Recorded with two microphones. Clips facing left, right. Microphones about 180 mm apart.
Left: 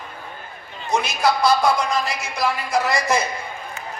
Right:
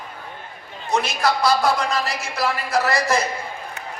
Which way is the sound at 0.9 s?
Centre (ahead or behind).